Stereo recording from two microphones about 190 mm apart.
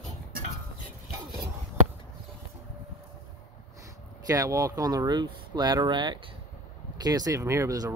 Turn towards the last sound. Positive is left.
turn(degrees=-15)  # may be behind; listen again after turning